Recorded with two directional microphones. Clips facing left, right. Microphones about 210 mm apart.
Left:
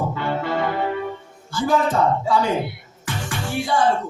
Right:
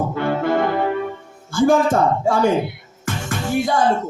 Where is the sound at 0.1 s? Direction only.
50° right (ahead or behind).